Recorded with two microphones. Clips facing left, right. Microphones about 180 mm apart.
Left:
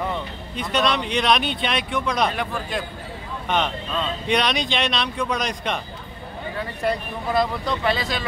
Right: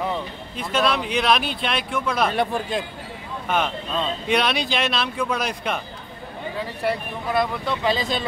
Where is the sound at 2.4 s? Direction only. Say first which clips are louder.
Right 4 dB; 25° right (ahead or behind).